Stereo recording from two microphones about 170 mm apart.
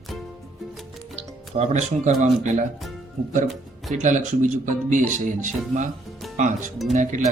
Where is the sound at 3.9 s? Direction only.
45° right (ahead or behind).